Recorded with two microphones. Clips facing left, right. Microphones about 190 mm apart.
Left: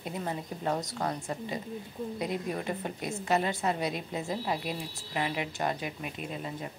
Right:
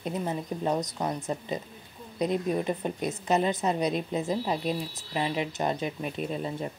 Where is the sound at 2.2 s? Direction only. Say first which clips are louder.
Right 8 dB; 20° right (ahead or behind).